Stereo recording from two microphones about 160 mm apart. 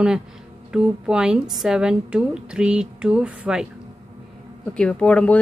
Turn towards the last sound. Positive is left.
turn(degrees=10)  # may be behind; listen again after turning